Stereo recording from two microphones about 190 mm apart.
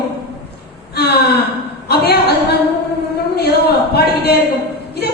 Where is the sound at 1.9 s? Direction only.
55° left (ahead or behind).